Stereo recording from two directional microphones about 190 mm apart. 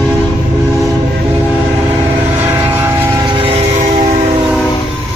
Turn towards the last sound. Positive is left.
turn(degrees=-30)  # may be behind; listen again after turning